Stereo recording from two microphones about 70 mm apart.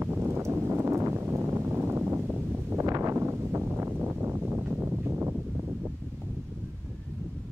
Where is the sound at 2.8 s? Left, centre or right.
Right.